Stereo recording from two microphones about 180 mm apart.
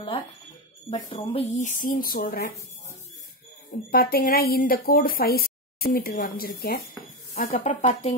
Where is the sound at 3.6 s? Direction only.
55° left (ahead or behind).